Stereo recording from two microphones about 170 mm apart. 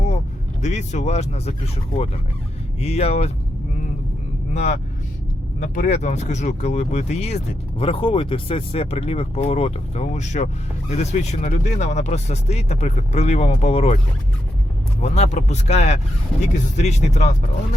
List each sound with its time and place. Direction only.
0.6 s speech: 45° left (ahead or behind)
4.5 s speech: 45° left (ahead or behind)
15.0 s speech: 40° left (ahead or behind)